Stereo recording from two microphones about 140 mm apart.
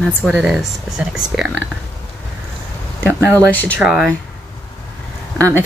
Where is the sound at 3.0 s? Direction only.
15° right (ahead or behind).